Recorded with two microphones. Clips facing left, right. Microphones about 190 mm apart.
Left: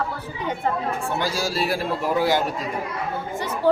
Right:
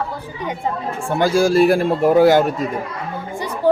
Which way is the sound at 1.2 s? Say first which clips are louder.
Right 15 dB; 50° right (ahead or behind).